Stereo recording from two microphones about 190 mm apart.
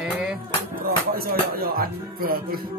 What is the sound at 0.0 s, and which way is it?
Music, centre (ahead or behind).